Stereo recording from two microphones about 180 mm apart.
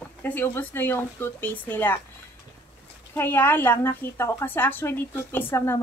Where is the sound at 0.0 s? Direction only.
10° left (ahead or behind).